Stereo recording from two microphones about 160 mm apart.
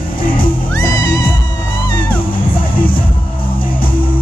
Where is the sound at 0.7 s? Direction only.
25° left (ahead or behind).